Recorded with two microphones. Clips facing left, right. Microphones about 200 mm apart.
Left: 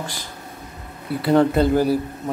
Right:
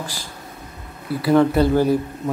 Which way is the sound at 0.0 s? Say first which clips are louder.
Even; 20° left (ahead or behind).